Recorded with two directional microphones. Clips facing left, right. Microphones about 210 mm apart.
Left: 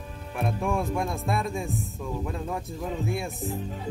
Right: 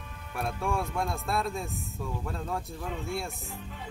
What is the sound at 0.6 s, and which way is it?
Speech, 15° left (ahead or behind).